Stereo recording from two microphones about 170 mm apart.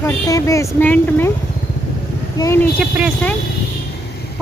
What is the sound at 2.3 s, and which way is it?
Speech, 15° left (ahead or behind).